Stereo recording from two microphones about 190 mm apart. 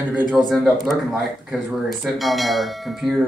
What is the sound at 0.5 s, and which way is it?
Speech, centre (ahead or behind).